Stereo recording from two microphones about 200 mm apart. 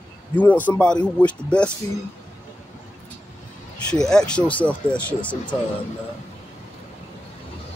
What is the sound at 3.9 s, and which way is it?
Speech, 5° left (ahead or behind).